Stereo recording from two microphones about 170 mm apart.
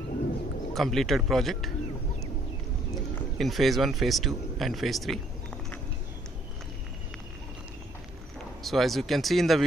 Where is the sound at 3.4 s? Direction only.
Centre (ahead or behind).